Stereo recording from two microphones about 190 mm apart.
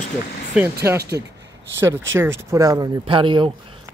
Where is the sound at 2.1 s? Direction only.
15° right (ahead or behind).